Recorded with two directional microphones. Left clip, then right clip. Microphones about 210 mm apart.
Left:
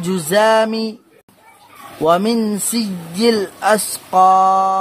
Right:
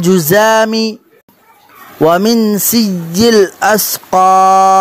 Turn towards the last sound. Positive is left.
turn(degrees=-30)  # may be behind; listen again after turning